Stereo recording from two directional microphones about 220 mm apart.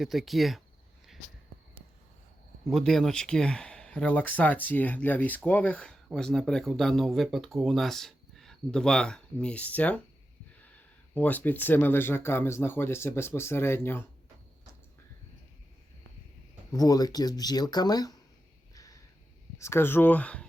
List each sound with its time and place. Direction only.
0.0 s speech: centre (ahead or behind)
2.6 s speech: centre (ahead or behind)
11.1 s speech: 5° left (ahead or behind)
16.7 s speech: 15° left (ahead or behind)
18.7 s a sound: 15° left (ahead or behind)
19.5 s speech: 10° left (ahead or behind)